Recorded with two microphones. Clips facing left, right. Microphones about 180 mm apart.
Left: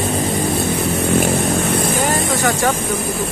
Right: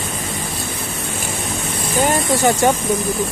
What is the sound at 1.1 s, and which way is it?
Vehicle, 60° left (ahead or behind).